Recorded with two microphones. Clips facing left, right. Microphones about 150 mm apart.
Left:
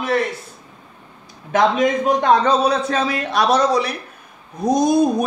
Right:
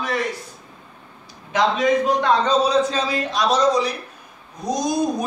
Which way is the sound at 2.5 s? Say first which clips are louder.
Left 1 dB; 60° left (ahead or behind).